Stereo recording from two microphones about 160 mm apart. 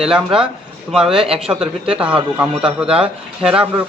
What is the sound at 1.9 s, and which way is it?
A man's voice, 5° right (ahead or behind).